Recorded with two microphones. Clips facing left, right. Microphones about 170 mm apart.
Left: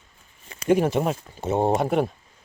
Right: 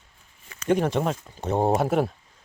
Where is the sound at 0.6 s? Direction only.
10° left (ahead or behind).